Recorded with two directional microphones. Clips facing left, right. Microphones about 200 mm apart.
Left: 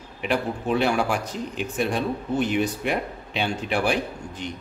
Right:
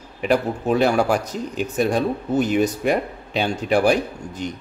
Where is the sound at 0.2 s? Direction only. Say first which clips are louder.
Right 5 dB; 40° right (ahead or behind).